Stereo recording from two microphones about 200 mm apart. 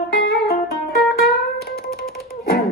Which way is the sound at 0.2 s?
55° left (ahead or behind).